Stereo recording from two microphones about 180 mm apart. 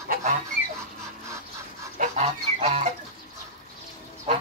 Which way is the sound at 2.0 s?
35° right (ahead or behind).